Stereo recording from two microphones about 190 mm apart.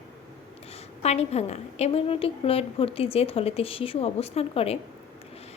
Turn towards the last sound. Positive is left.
turn(degrees=30)  # may be behind; listen again after turning